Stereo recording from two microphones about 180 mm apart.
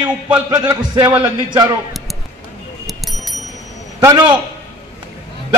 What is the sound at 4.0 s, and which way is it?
Speech, 20° right (ahead or behind).